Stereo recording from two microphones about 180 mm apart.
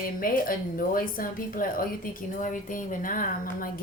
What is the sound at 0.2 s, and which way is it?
A woman's voice, 50° left (ahead or behind).